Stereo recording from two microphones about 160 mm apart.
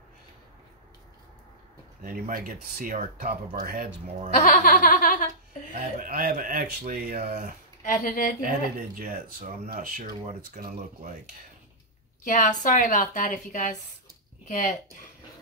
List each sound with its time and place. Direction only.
2.0 s speech: 60° right (ahead or behind)
4.3 s a woman's voice: 60° left (ahead or behind)
5.7 s speech: 60° right (ahead or behind)
7.8 s a woman's voice: 60° left (ahead or behind)
8.4 s speech: 60° right (ahead or behind)
12.3 s a woman's voice: 55° left (ahead or behind)